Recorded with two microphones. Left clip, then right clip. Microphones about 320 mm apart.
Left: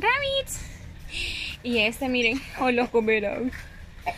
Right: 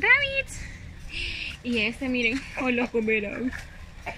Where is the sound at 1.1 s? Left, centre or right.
Centre.